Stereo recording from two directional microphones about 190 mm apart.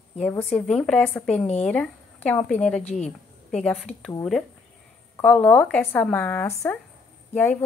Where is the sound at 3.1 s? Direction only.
5° left (ahead or behind).